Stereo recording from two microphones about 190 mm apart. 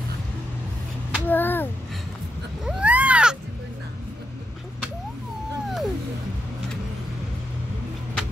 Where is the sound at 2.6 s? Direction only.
5° right (ahead or behind).